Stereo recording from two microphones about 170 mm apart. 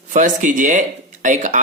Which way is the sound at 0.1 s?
50° right (ahead or behind).